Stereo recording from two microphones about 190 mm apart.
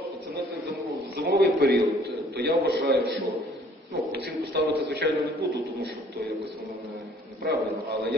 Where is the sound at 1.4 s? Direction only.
55° right (ahead or behind).